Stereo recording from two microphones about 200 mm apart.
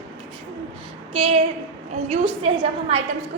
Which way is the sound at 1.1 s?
30° right (ahead or behind).